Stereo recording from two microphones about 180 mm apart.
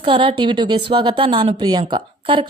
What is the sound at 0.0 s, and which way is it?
Speech, 30° right (ahead or behind).